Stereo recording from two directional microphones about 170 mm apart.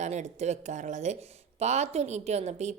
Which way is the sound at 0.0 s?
40° right (ahead or behind).